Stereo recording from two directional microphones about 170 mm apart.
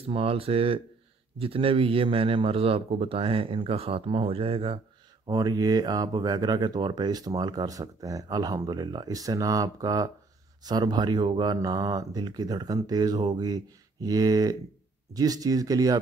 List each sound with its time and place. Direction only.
0.0 s a man's voice: 35° right (ahead or behind)
5.2 s speech: 25° right (ahead or behind)